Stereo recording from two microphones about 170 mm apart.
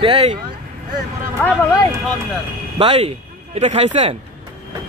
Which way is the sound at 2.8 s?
35° right (ahead or behind).